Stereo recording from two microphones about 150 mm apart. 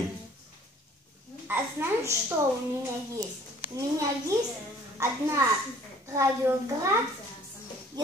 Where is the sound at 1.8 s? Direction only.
15° right (ahead or behind).